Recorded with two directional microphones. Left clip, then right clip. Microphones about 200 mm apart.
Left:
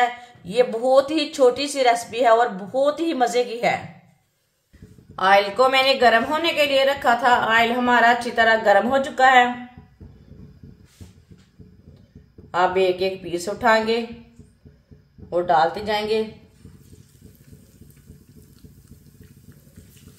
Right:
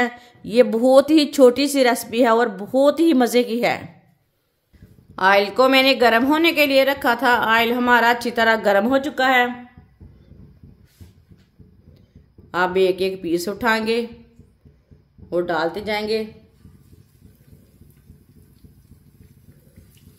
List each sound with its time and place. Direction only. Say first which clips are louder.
0.0 s a woman's voice: left 2 dB; 50° right (ahead or behind)
5.1 s a woman's voice: right 1 dB; 50° right (ahead or behind)
12.4 s a woman's voice: right 1 dB; 55° right (ahead or behind)
15.2 s a woman's voice: left 3 dB; 50° right (ahead or behind)